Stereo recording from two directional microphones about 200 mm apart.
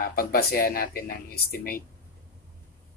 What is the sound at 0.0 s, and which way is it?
Speech, 50° left (ahead or behind).